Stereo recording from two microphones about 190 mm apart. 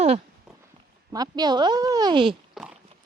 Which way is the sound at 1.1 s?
20° right (ahead or behind).